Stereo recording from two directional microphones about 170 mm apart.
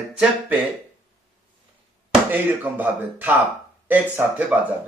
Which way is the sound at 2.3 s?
10° right (ahead or behind).